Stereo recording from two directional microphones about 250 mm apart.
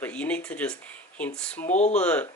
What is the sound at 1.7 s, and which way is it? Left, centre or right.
Speech, left.